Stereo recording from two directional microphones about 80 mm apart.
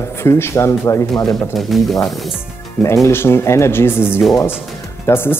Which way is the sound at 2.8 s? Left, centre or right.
Left.